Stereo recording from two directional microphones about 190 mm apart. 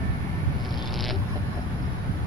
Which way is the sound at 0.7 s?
Centre (ahead or behind).